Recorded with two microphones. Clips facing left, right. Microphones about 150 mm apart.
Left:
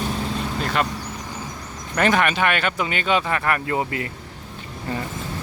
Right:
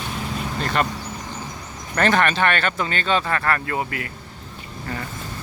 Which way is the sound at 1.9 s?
10° left (ahead or behind).